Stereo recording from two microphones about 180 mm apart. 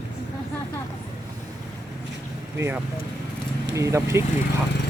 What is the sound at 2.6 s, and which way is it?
Speech, 15° right (ahead or behind).